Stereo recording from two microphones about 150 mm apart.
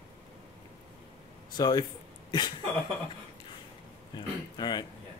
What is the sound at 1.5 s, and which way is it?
Speech, 30° left (ahead or behind).